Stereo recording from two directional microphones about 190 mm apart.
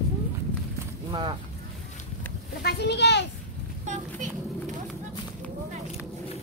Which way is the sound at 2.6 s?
60° left (ahead or behind).